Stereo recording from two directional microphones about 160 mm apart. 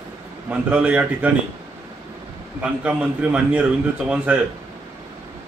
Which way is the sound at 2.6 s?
10° right (ahead or behind).